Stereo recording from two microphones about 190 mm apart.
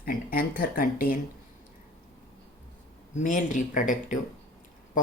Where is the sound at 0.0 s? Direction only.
50° left (ahead or behind).